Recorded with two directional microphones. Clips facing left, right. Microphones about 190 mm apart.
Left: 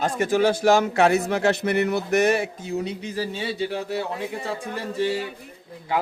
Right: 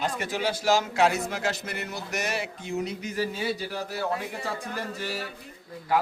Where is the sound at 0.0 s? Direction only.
45° left (ahead or behind).